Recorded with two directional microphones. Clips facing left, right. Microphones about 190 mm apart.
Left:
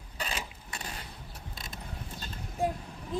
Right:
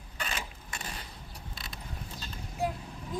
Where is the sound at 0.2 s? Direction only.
35° left (ahead or behind).